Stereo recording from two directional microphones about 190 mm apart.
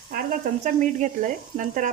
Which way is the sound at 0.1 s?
50° right (ahead or behind).